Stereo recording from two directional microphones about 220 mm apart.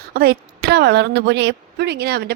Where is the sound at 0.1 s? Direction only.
45° right (ahead or behind).